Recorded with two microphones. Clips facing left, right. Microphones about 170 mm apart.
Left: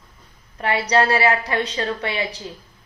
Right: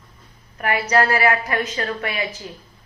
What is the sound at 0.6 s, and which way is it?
Speech, 30° left (ahead or behind).